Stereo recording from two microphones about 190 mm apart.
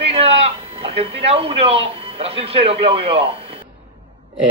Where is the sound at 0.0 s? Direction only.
30° right (ahead or behind).